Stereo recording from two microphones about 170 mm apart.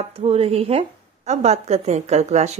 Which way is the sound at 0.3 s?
35° right (ahead or behind).